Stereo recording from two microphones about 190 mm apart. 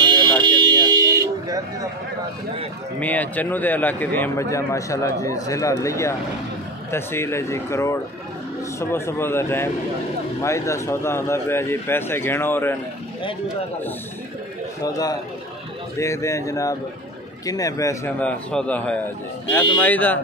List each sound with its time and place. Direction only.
0.0 s a sound: 25° right (ahead or behind)
0.4 s vehicle: 20° right (ahead or behind)
3.0 s a man's voice: 10° left (ahead or behind)
14.8 s a man's voice: 20° left (ahead or behind)